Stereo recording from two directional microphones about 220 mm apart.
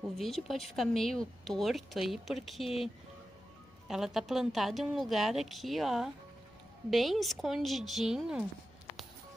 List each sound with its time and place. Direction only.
0.1 s speech: centre (ahead or behind)
3.8 s speech: centre (ahead or behind)